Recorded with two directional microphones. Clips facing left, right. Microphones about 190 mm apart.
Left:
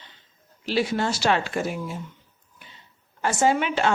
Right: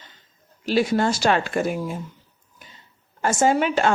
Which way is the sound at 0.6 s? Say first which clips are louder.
Right 4 dB; 45° right (ahead or behind).